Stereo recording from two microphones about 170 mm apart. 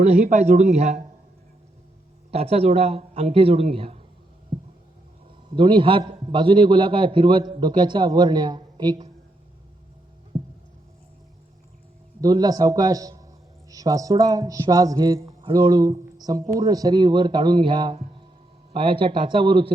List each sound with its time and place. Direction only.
0.0 s speech: 45° right (ahead or behind)
2.3 s a man's voice: 35° right (ahead or behind)
5.5 s a man's voice: 30° right (ahead or behind)
12.2 s a man's voice: 20° right (ahead or behind)